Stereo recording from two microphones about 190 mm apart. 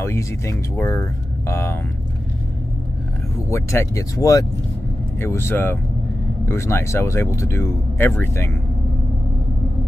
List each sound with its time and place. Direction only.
0.0 s speech: 15° left (ahead or behind)
3.4 s speech: 15° left (ahead or behind)